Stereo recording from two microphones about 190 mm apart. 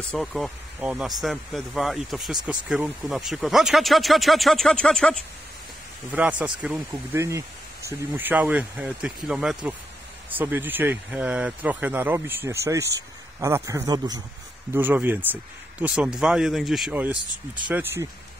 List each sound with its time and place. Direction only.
0.1 s speech: centre (ahead or behind)
6.1 s speech: 5° right (ahead or behind)
14.7 s speech: 10° right (ahead or behind)